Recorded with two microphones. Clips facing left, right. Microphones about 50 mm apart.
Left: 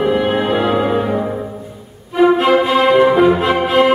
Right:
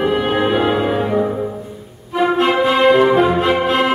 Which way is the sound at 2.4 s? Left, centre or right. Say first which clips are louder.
Left 1 dB; centre.